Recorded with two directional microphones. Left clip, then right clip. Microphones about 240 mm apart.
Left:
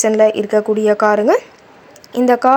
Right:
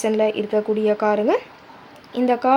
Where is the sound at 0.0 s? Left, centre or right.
Centre.